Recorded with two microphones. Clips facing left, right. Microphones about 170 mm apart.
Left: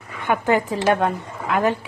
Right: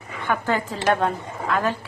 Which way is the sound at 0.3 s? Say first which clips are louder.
Left 4 dB; 20° left (ahead or behind).